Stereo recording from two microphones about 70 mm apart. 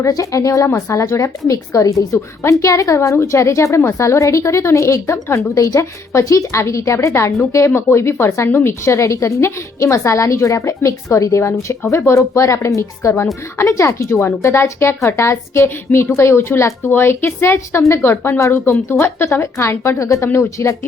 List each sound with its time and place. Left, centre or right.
0.1 s a woman's voice: left
3.0 s a woman's voice: left